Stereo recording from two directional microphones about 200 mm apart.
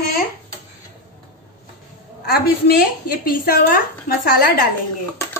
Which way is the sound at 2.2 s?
50° left (ahead or behind).